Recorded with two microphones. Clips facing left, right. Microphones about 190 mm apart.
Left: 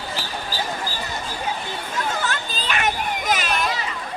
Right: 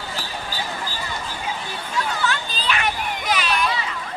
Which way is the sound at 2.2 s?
45° left (ahead or behind).